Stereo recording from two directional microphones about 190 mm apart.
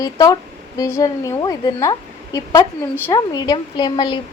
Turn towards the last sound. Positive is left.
turn(degrees=25)  # may be behind; listen again after turning